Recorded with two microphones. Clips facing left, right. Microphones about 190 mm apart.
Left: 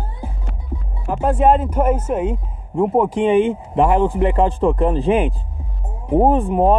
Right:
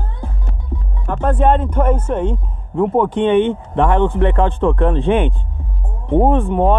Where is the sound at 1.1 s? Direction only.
5° left (ahead or behind).